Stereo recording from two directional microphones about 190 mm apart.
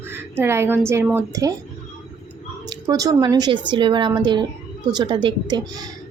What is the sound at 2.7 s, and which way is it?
A woman's voice, 20° right (ahead or behind).